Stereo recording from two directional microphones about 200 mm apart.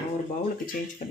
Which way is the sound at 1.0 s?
40° left (ahead or behind).